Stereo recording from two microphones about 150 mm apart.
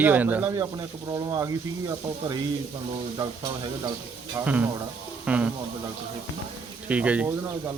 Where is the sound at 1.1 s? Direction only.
25° right (ahead or behind).